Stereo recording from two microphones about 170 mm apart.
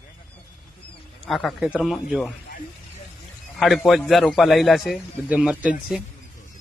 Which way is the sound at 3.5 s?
Centre (ahead or behind).